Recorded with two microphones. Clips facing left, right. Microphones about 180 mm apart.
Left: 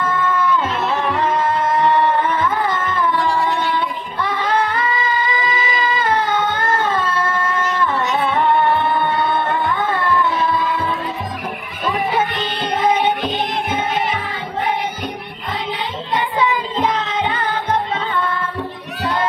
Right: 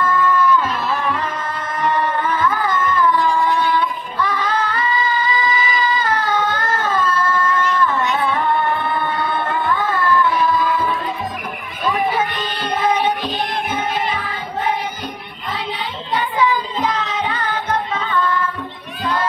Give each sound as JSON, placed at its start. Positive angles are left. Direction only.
{"t": 0.0, "sound": "music", "side_deg": 25}
{"t": 3.4, "sound": "singing", "side_deg": 25}
{"t": 7.7, "sound": "music", "side_deg": 25}
{"t": 16.2, "sound": "child singing", "side_deg": 25}
{"t": 16.8, "sound": "music", "side_deg": 25}